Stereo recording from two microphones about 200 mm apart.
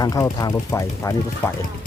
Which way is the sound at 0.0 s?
20° left (ahead or behind).